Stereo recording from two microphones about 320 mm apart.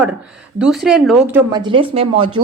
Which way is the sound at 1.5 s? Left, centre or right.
Centre.